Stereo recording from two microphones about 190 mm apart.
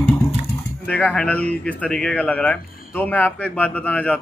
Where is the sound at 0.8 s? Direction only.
5° left (ahead or behind).